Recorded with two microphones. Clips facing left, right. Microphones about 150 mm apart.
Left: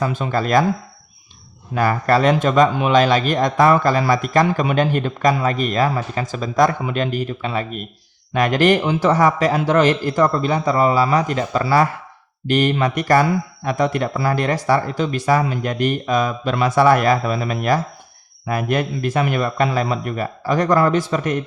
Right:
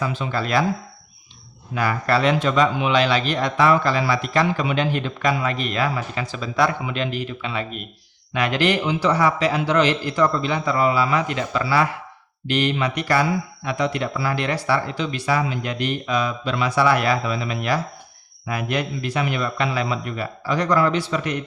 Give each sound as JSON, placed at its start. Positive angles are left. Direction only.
{"t": 0.0, "sound": "a man's voice", "side_deg": 50}
{"t": 1.7, "sound": "a man's voice", "side_deg": 45}